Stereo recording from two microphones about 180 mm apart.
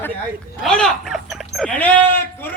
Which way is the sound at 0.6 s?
5° left (ahead or behind).